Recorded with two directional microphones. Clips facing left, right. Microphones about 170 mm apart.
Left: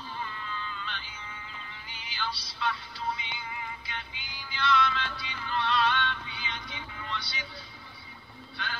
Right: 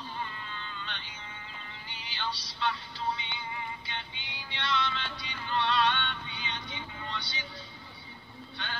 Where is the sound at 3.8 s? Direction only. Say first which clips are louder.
Even; 30° right (ahead or behind).